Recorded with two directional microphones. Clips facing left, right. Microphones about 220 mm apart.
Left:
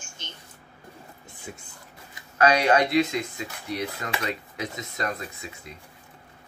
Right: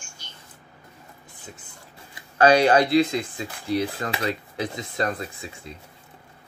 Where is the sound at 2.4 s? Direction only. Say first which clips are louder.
Right 4 dB; 30° right (ahead or behind).